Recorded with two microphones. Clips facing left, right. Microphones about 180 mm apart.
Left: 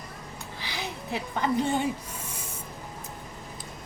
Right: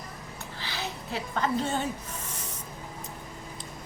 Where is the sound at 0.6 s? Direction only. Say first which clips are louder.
Even; 15° left (ahead or behind).